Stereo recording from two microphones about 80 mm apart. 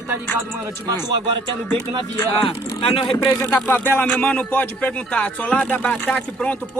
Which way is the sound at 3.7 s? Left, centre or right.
Left.